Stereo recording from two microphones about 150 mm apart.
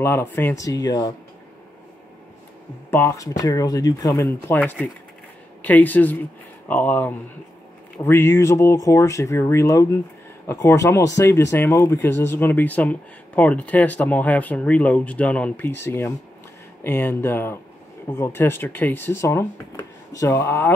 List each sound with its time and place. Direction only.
0.0 s speech: 15° left (ahead or behind)
2.9 s speech: 15° left (ahead or behind)
4.6 s speech: 10° left (ahead or behind)